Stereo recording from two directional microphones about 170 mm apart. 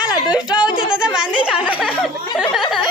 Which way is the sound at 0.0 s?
25° left (ahead or behind).